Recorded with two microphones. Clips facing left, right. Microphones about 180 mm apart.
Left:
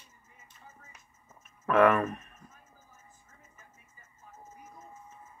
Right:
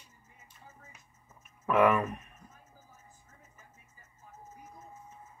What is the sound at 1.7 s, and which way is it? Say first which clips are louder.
Speech: left 2 dB; 10° right (ahead or behind).